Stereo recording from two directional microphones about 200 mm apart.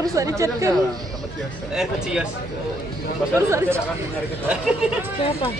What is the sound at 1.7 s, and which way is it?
Speech, 5° right (ahead or behind).